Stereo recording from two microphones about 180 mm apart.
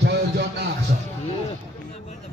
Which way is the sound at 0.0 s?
65° right (ahead or behind).